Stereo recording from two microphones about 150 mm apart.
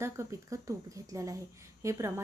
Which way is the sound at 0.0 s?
20° right (ahead or behind).